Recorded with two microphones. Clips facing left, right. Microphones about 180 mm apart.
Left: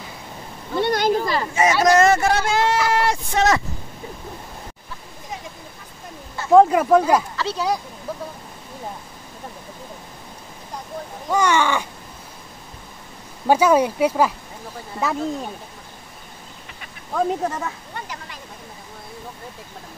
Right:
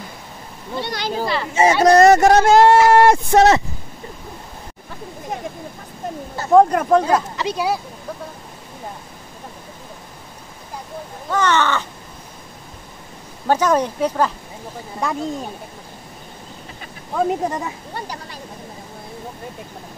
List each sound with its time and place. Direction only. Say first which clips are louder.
0.7 s a sound: left 6 dB; 50° left (ahead or behind)
1.5 s speech: right 4 dB; 30° right (ahead or behind); by 3.4 s 50° right (ahead or behind)
6.5 s speech: even; centre (ahead or behind)
7.3 s speech: right 2 dB; 15° right (ahead or behind)
11.2 s speech: even; 10° left (ahead or behind)
13.5 s speech: left 2 dB; 10° left (ahead or behind)
17.1 s speech: right 2 dB; 10° right (ahead or behind)
17.9 s a sound: right 3 dB; 35° right (ahead or behind)